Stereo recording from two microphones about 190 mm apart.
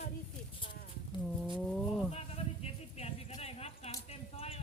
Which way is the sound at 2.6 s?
35° left (ahead or behind).